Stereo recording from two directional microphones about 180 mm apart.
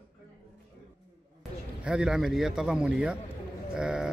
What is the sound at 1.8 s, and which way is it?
A man's voice, 5° right (ahead or behind).